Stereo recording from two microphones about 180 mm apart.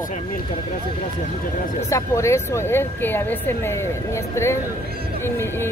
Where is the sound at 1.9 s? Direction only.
15° left (ahead or behind).